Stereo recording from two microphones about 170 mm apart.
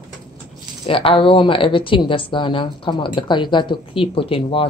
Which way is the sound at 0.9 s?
30° left (ahead or behind).